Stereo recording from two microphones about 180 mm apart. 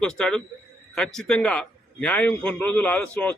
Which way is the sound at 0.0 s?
5° left (ahead or behind).